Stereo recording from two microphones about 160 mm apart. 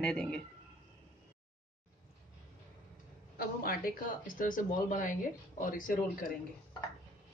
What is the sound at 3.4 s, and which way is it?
Speech, 70° left (ahead or behind).